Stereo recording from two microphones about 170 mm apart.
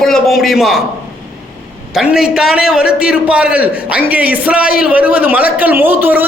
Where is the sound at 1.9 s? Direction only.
5° right (ahead or behind).